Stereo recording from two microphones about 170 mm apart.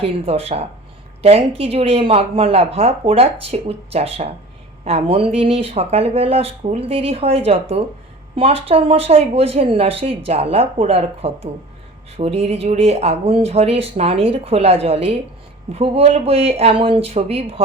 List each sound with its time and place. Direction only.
0.3 s a woman's voice: 35° right (ahead or behind)